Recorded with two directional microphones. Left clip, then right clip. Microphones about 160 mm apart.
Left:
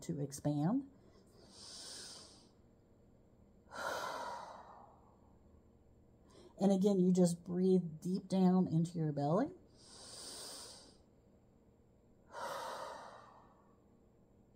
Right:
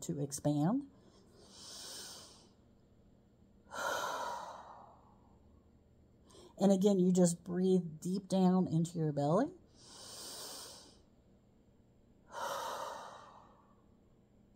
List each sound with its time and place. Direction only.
0.0 s speech: 20° right (ahead or behind)
1.3 s a sound: 20° right (ahead or behind)
3.6 s breathing: 20° right (ahead or behind)
6.3 s a woman's voice: 20° right (ahead or behind)
12.3 s breathing: 20° right (ahead or behind)